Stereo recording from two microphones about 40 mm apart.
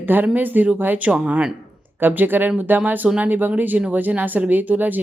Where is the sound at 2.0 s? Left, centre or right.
Right.